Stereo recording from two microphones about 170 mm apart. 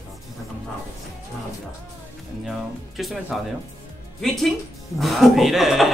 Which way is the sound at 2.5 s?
Centre (ahead or behind).